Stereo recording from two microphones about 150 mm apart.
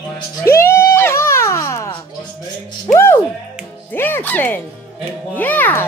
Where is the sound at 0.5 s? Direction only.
20° left (ahead or behind).